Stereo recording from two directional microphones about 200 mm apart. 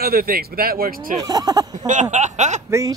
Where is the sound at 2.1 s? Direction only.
35° right (ahead or behind).